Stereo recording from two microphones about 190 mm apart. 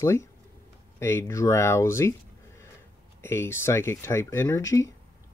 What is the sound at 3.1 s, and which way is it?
Speech, 15° left (ahead or behind).